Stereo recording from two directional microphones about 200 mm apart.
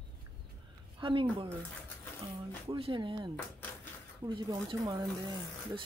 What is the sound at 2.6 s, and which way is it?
Speech, 25° right (ahead or behind).